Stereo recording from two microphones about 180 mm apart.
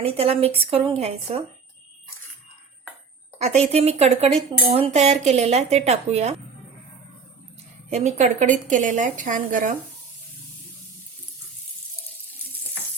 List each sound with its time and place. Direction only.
0.0 s speech: 30° right (ahead or behind)
3.4 s speech: 35° right (ahead or behind)
7.9 s a woman's voice: 40° right (ahead or behind)